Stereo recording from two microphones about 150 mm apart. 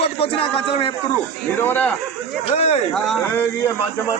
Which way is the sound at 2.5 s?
40° left (ahead or behind).